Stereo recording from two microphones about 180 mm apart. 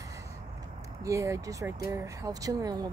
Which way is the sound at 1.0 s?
15° right (ahead or behind).